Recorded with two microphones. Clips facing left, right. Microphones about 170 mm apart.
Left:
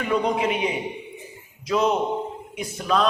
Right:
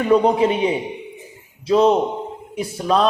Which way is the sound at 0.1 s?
35° right (ahead or behind).